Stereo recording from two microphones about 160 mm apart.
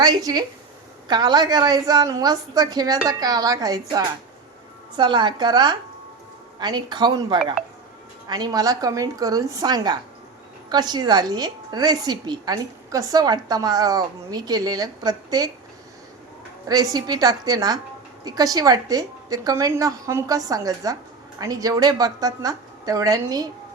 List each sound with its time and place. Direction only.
0.0 s a woman's voice: 25° right (ahead or behind)
16.6 s a woman's voice: 25° right (ahead or behind)